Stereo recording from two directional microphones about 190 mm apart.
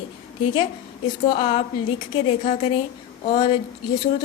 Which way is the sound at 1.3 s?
30° left (ahead or behind).